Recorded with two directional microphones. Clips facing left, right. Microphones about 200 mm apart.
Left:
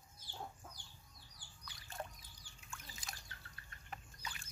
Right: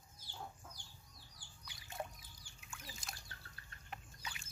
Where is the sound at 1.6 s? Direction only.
15° right (ahead or behind).